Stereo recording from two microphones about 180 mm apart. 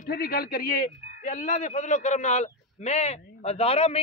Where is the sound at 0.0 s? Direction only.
55° left (ahead or behind).